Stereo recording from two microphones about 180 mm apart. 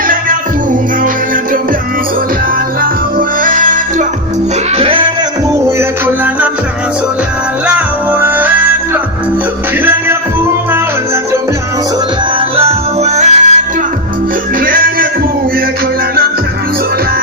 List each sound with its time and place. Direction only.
0.1 s music: 50° right (ahead or behind)
2.8 s music: 50° right (ahead or behind)
4.8 s a sound: 30° right (ahead or behind)
7.7 s music: 10° right (ahead or behind)
12.4 s music: 35° right (ahead or behind)
14.6 s music: 50° right (ahead or behind)